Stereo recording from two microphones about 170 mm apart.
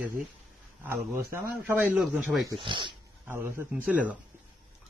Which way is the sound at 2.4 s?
30° right (ahead or behind).